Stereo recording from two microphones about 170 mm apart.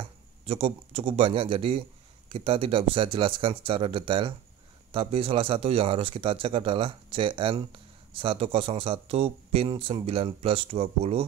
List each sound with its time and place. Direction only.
0.5 s speech: 35° right (ahead or behind)